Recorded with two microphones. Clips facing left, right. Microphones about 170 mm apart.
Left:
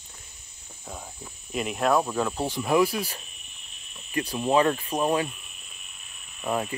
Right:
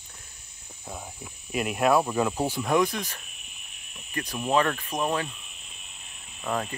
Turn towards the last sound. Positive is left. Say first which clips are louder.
# left 2 dB
turn(degrees=15)  # may be behind; listen again after turning